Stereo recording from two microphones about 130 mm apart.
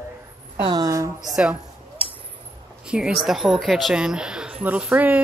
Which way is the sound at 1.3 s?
5° right (ahead or behind).